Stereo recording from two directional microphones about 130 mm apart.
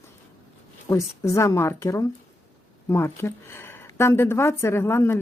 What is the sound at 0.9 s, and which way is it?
Speech, 25° left (ahead or behind).